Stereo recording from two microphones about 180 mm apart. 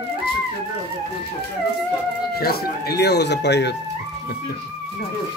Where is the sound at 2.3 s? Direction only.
60° left (ahead or behind).